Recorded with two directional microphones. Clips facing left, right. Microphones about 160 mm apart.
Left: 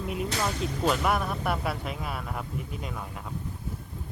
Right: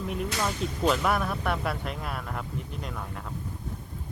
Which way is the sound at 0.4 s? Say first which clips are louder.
Right 1 dB; 5° left (ahead or behind).